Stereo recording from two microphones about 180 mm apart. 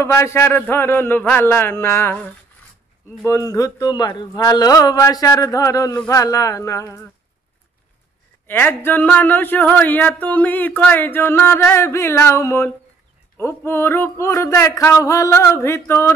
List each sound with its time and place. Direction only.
0.0 s speech: 15° left (ahead or behind)
3.3 s a sound: 15° left (ahead or behind)
6.0 s speech: 20° left (ahead or behind)
8.5 s speech: 10° left (ahead or behind)